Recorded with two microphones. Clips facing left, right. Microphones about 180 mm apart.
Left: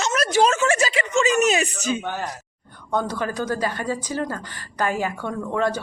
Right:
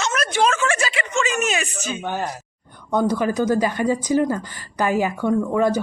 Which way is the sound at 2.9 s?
10° right (ahead or behind).